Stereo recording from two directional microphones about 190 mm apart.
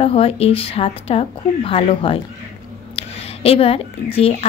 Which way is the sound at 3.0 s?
30° left (ahead or behind).